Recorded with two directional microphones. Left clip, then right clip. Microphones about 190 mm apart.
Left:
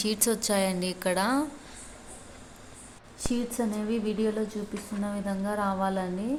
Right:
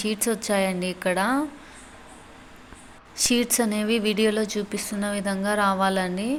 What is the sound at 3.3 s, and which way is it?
A woman's voice, 20° right (ahead or behind).